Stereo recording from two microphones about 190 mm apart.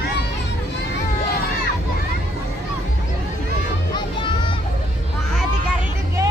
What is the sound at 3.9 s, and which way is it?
Music, 25° left (ahead or behind).